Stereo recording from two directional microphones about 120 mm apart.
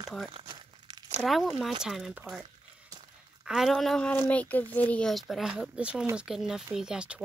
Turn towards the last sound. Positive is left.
turn(degrees=-10)  # may be behind; listen again after turning